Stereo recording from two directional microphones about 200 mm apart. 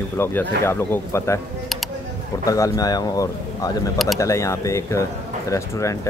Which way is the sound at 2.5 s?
15° left (ahead or behind).